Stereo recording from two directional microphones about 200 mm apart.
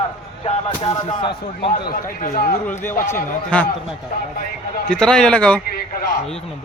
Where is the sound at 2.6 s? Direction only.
10° left (ahead or behind).